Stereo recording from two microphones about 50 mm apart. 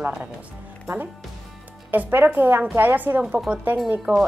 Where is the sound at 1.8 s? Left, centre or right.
Right.